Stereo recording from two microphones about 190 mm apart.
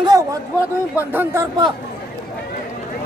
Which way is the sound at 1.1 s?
10° right (ahead or behind).